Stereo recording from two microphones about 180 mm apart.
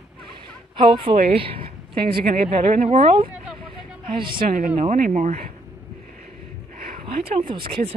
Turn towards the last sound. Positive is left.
turn(degrees=-30)  # may be behind; listen again after turning